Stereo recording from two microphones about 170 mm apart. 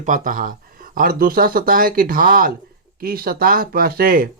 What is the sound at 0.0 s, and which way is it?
Speech, 50° right (ahead or behind).